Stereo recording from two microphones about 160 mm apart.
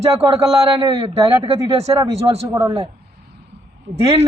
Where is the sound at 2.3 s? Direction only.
35° right (ahead or behind).